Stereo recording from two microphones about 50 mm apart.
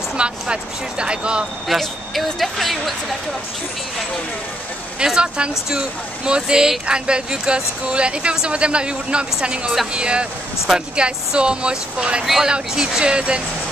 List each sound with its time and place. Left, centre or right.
0.2 s speech: centre
1.7 s speech: centre
4.9 s speech: centre